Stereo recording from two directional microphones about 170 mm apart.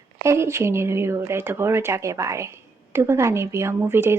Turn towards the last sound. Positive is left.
turn(degrees=-15)  # may be behind; listen again after turning